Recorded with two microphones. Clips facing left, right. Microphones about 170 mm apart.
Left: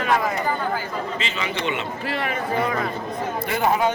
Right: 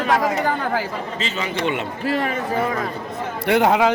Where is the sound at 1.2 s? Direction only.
40° right (ahead or behind).